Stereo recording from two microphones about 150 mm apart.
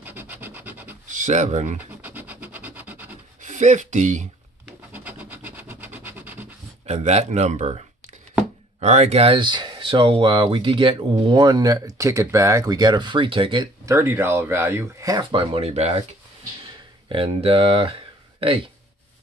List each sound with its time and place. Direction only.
0.0 s rub: 15° right (ahead or behind)
1.0 s speech: 55° right (ahead or behind)
1.8 s scratch: 10° right (ahead or behind)
3.3 s speech: 55° right (ahead or behind)
4.9 s a sound: 10° right (ahead or behind)
6.9 s speech: 50° right (ahead or behind)
13.8 s speech: 20° right (ahead or behind); by 16.0 s 45° right (ahead or behind)
17.1 s speech: 35° right (ahead or behind)